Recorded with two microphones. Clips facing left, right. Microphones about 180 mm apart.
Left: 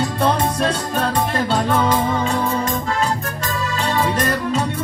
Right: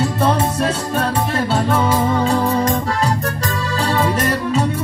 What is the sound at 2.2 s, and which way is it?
Music, 35° right (ahead or behind).